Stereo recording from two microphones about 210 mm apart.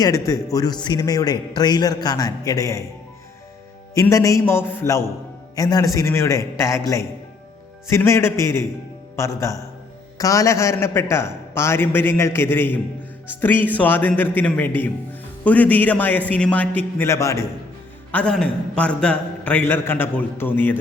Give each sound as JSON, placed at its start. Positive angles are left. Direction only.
{"t": 0.0, "sound": "speech", "side_deg": 15}
{"t": 3.9, "sound": "speech", "side_deg": 15}